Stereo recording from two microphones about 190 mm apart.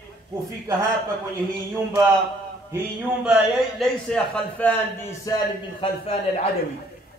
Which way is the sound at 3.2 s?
5° right (ahead or behind).